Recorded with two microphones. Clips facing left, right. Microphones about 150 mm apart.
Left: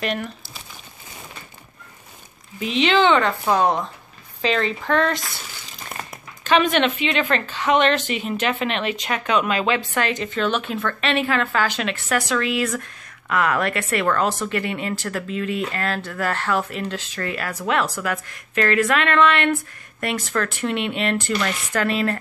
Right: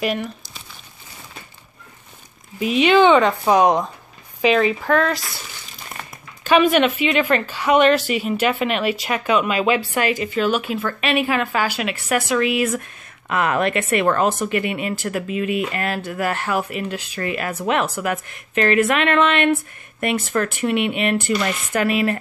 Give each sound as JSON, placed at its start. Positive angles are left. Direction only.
{"t": 0.0, "sound": "speech", "side_deg": 0}
{"t": 2.6, "sound": "speech", "side_deg": -10}
{"t": 6.4, "sound": "speech", "side_deg": -10}